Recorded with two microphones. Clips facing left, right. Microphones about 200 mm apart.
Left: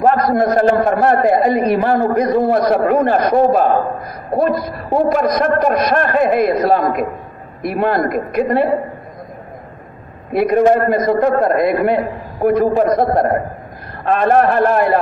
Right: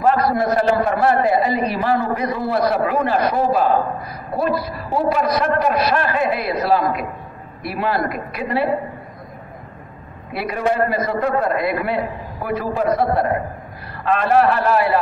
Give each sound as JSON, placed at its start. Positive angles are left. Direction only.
{"t": 0.0, "sound": "a man's voice", "side_deg": 45}
{"t": 10.3, "sound": "a man's voice", "side_deg": 50}